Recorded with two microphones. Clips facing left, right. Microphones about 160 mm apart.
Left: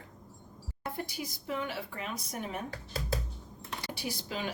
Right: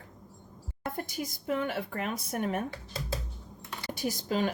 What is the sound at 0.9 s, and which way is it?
A woman's voice, 45° right (ahead or behind).